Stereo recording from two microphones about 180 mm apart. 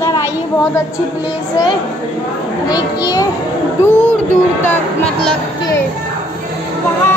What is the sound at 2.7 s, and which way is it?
Speech, 20° left (ahead or behind).